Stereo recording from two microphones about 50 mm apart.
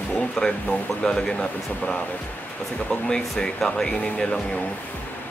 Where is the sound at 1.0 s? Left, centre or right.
Centre.